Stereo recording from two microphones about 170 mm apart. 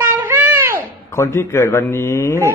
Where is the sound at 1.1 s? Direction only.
15° left (ahead or behind).